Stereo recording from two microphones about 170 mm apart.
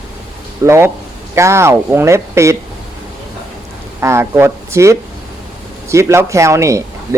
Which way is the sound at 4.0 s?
15° right (ahead or behind).